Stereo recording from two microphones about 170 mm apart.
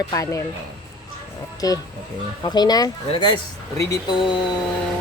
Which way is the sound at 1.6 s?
20° left (ahead or behind).